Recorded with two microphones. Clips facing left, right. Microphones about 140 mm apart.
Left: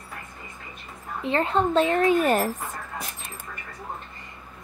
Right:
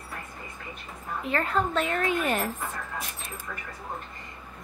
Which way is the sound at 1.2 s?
25° left (ahead or behind).